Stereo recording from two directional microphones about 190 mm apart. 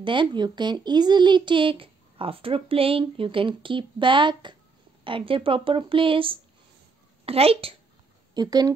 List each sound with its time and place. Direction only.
0.0 s a child's voice: 25° right (ahead or behind)
8.4 s a child's voice: 20° right (ahead or behind)